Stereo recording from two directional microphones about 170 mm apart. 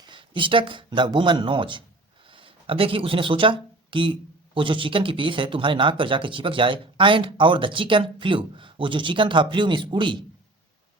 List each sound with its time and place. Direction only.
0.0 s speech: 30° right (ahead or behind)